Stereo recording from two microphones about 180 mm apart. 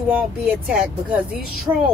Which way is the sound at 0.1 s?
5° right (ahead or behind).